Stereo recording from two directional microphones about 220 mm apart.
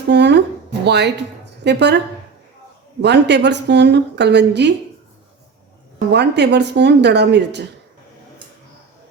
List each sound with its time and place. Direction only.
0.1 s a woman's voice: 50° right (ahead or behind)
3.0 s a woman's voice: 50° right (ahead or behind)
6.1 s a woman's voice: 50° right (ahead or behind)